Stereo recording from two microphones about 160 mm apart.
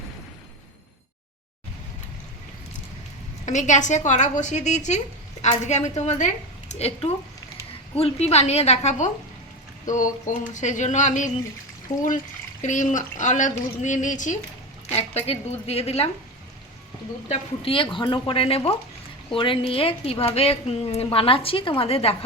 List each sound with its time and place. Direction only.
3.4 s a woman's voice: 50° left (ahead or behind)
12.6 s a woman's voice: 50° left (ahead or behind)
14.8 s a woman's voice: 40° left (ahead or behind)
17.2 s a woman's voice: 35° left (ahead or behind)